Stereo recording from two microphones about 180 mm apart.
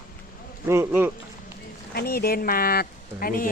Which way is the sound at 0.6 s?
15° right (ahead or behind).